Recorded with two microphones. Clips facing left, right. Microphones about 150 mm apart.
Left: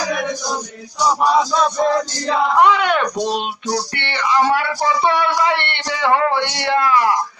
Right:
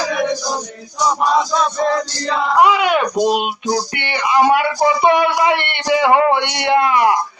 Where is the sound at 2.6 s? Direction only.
5° right (ahead or behind).